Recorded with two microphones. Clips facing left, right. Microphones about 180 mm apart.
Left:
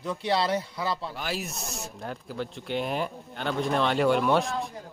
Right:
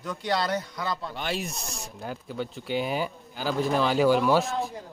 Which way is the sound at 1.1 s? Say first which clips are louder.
Right 2 dB; 5° left (ahead or behind).